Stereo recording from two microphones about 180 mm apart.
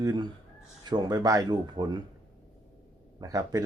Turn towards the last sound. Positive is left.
turn(degrees=-20)  # may be behind; listen again after turning